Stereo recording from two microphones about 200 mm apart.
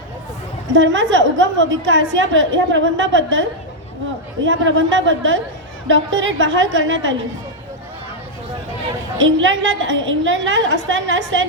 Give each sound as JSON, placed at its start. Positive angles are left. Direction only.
{"t": 0.7, "sound": "a woman's voice", "side_deg": -65}
{"t": 4.4, "sound": "a woman's voice", "side_deg": -65}
{"t": 9.1, "sound": "a woman's voice", "side_deg": -70}